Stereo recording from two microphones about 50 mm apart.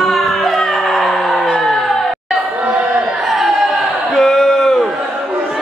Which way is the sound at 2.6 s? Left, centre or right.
Centre.